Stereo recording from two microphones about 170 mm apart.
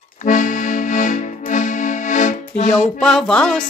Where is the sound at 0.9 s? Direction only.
50° left (ahead or behind).